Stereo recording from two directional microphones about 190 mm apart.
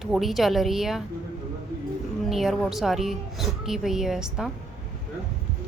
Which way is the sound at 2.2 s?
Centre (ahead or behind).